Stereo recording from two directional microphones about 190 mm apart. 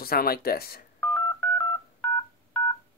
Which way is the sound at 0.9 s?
5° left (ahead or behind).